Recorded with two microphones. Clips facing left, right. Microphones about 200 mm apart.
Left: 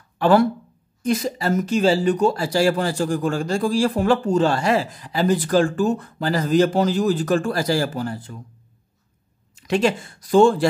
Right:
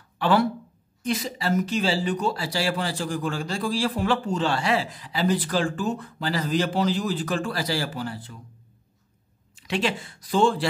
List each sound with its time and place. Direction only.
0.2 s speech: 45° left (ahead or behind)
9.6 s speech: 45° left (ahead or behind)